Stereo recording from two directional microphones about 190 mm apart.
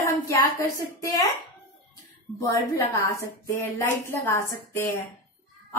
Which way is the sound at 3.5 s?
15° left (ahead or behind).